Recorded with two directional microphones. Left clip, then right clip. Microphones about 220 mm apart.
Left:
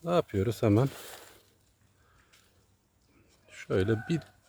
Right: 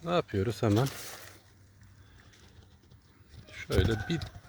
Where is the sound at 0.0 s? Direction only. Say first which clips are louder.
Left 2 dB; 20° left (ahead or behind).